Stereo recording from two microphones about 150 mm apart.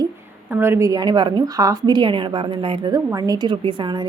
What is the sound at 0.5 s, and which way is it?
A woman's voice, 15° right (ahead or behind).